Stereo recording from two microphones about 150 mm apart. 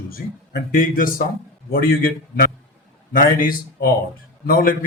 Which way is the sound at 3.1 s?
70° left (ahead or behind).